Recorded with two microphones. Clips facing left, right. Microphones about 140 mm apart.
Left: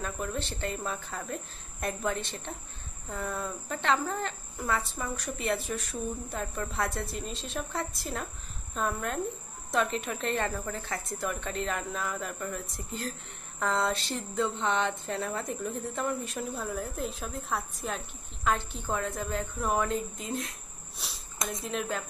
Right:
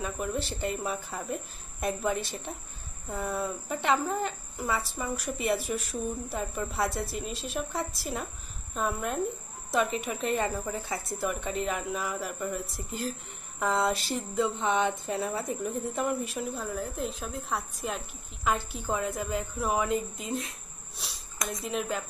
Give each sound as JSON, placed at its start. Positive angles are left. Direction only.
{"t": 0.0, "sound": "speech", "side_deg": -10}
{"t": 21.6, "sound": "speech", "side_deg": 0}